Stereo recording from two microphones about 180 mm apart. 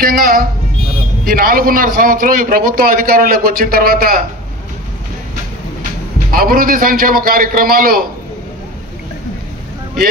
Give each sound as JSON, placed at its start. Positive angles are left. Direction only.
{"t": 0.0, "sound": "a man's voice", "side_deg": -55}
{"t": 6.3, "sound": "a man's voice", "side_deg": -55}